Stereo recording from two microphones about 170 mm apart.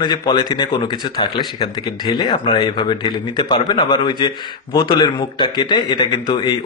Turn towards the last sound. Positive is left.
turn(degrees=25)  # may be behind; listen again after turning